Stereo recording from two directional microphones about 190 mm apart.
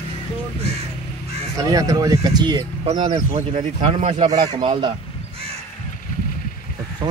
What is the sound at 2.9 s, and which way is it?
Speech, 30° right (ahead or behind).